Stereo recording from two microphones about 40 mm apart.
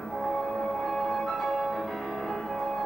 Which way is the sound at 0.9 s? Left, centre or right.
Centre.